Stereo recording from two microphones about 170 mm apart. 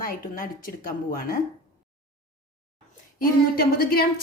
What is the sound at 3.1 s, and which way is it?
Speech, 60° left (ahead or behind).